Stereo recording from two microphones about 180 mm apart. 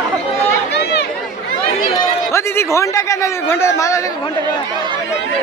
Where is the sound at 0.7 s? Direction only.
75° left (ahead or behind).